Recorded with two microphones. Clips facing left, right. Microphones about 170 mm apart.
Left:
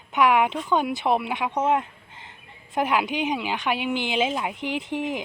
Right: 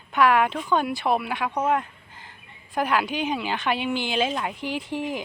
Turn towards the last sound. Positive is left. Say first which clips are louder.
# left 1 dB
turn(degrees=20)  # may be behind; listen again after turning